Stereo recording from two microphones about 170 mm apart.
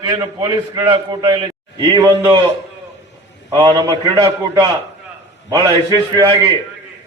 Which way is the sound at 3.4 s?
25° right (ahead or behind).